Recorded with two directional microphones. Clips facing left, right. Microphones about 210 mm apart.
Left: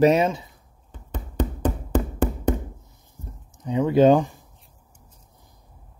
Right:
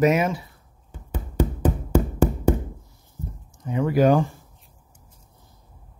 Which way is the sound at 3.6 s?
20° left (ahead or behind).